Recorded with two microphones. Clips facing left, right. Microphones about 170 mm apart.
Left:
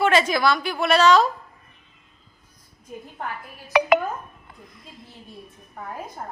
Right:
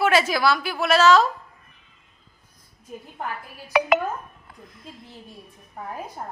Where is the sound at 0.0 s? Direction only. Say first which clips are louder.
Left 1 dB; 5° right (ahead or behind).